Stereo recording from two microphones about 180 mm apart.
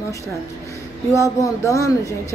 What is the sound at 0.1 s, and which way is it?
A woman's voice, 15° left (ahead or behind).